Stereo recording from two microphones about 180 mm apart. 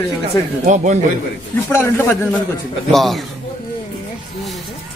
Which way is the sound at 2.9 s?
Centre (ahead or behind).